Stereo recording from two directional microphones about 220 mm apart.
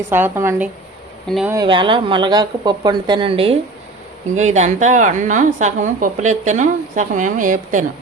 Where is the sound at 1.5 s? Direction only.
20° right (ahead or behind).